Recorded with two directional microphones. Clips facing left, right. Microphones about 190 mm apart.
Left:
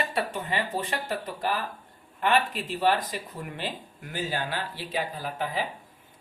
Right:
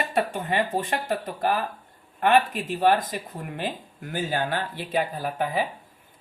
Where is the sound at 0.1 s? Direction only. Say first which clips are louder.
Right 4 dB; 50° right (ahead or behind).